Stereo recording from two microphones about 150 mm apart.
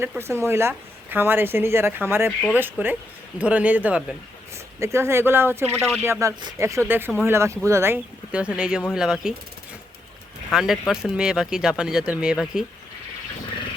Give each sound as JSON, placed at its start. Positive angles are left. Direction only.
{"t": 0.2, "sound": "speech", "side_deg": -15}
{"t": 5.7, "sound": "speech", "side_deg": 5}
{"t": 6.0, "sound": "speech", "side_deg": -20}
{"t": 10.5, "sound": "speech", "side_deg": 0}